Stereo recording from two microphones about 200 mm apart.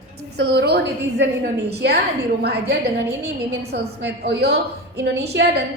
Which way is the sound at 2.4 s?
55° right (ahead or behind).